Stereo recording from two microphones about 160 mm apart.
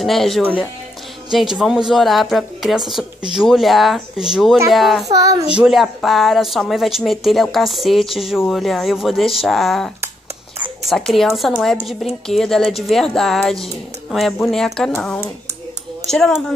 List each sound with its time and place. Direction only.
0.0 s a woman's voice: centre (ahead or behind)
5.0 s speech: 20° right (ahead or behind)
5.5 s a woman's voice: 5° right (ahead or behind)
10.9 s a woman's voice: centre (ahead or behind)